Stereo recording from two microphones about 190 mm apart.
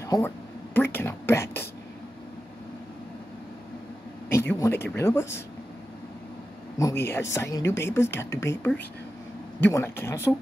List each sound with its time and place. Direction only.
0.0 s a sound: 15° left (ahead or behind)
0.7 s speech: 10° left (ahead or behind)
4.3 s speech: 15° left (ahead or behind)
6.8 s speech: 15° left (ahead or behind)